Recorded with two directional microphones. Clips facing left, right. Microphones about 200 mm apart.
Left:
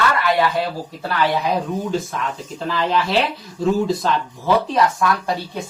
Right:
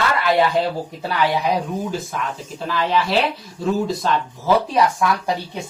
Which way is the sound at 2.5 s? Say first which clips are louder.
Even; centre (ahead or behind).